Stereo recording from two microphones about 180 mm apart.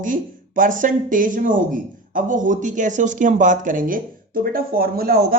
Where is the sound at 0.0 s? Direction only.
50° right (ahead or behind).